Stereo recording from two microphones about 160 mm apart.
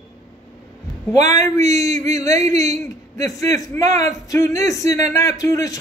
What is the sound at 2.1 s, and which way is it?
A man's voice, 20° left (ahead or behind).